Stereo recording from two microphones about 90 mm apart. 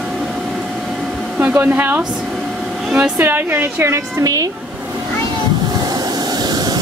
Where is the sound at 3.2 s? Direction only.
25° right (ahead or behind).